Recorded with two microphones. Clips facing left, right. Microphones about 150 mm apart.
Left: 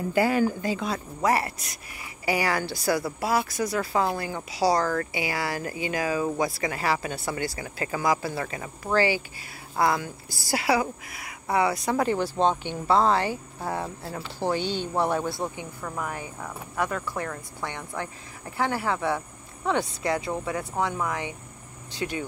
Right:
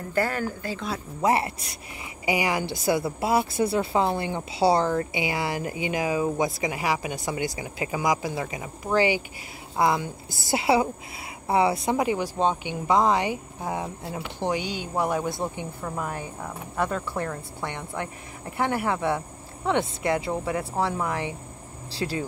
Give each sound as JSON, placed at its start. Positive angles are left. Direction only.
{"t": 0.1, "sound": "speech", "side_deg": 10}
{"t": 1.2, "sound": "a woman's voice", "side_deg": -25}
{"t": 12.0, "sound": "a woman's voice", "side_deg": -10}
{"t": 17.2, "sound": "a woman's voice", "side_deg": -25}